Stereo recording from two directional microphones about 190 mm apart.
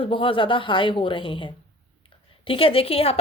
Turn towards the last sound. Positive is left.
turn(degrees=30)  # may be behind; listen again after turning